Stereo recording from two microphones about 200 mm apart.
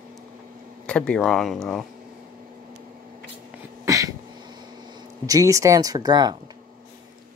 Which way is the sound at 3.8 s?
15° right (ahead or behind).